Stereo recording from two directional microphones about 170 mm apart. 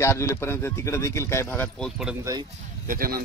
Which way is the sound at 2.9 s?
55° right (ahead or behind).